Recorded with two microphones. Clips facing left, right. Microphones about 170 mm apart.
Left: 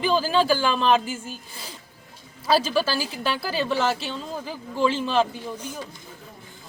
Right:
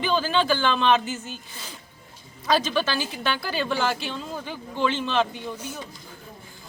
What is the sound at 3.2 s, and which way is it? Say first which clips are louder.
Speech: left 2 dB; 5° left (ahead or behind).